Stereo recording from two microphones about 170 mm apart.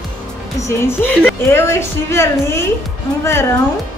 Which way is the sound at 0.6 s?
15° left (ahead or behind).